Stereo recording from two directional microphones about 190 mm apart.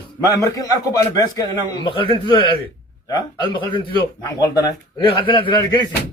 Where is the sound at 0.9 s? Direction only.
20° left (ahead or behind).